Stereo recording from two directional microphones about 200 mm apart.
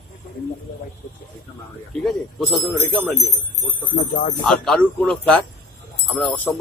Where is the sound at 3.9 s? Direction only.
40° left (ahead or behind).